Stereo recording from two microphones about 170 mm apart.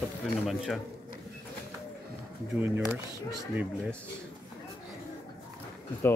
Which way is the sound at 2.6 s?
15° right (ahead or behind).